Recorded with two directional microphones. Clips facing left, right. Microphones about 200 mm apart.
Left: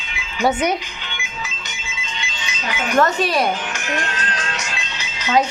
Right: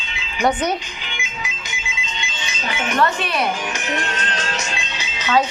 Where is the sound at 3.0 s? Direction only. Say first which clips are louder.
Left 4 dB; 40° left (ahead or behind).